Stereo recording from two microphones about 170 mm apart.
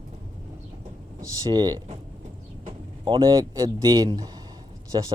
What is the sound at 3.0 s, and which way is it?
Speech, 30° right (ahead or behind).